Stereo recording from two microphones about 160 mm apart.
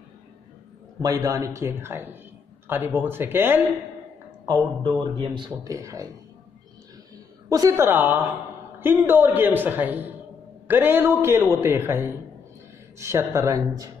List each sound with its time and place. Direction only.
1.0 s a woman's voice: 20° right (ahead or behind)
4.5 s a man's voice: 30° right (ahead or behind)
7.4 s a woman's voice: 20° right (ahead or behind)